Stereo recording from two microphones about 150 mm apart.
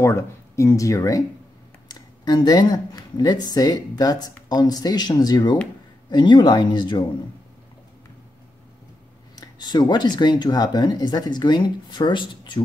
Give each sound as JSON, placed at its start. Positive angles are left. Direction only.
{"t": 0.0, "sound": "speech", "side_deg": 20}
{"t": 9.3, "sound": "speech", "side_deg": 25}